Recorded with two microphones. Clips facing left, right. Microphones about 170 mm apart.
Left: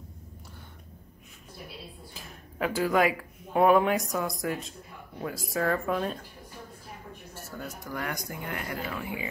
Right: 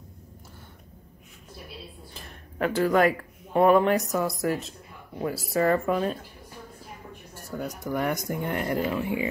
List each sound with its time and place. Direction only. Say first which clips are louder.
2.1 s speech: right 3 dB; 5° left (ahead or behind)
7.3 s speech: right 7 dB; 15° right (ahead or behind)